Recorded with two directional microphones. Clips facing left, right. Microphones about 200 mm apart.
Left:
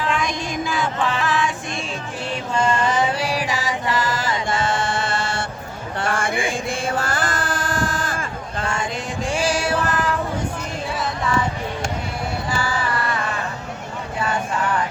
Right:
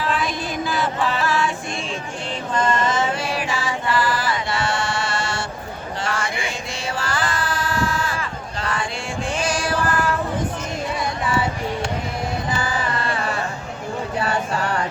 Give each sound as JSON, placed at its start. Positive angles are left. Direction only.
{"t": 0.1, "sound": "music", "side_deg": 0}
{"t": 1.2, "sound": "music", "side_deg": 15}
{"t": 2.6, "sound": "music", "side_deg": 10}
{"t": 3.2, "sound": "music", "side_deg": 35}
{"t": 6.0, "sound": "chant", "side_deg": 50}
{"t": 9.4, "sound": "music", "side_deg": 30}
{"t": 12.5, "sound": "music", "side_deg": -20}
{"t": 13.1, "sound": "a sound", "side_deg": -35}